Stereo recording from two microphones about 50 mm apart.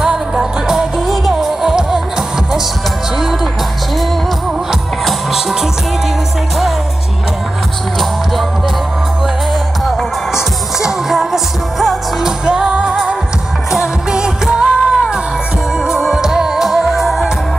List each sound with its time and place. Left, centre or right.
0.0 s music: centre
9.8 s music: centre
15.8 s music: centre